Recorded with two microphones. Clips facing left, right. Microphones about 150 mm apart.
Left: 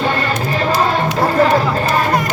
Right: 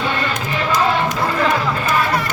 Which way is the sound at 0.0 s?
40° left (ahead or behind).